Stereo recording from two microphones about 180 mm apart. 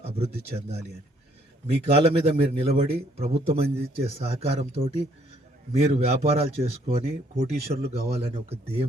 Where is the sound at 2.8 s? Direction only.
35° right (ahead or behind).